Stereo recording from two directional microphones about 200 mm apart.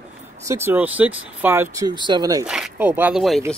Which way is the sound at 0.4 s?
15° right (ahead or behind).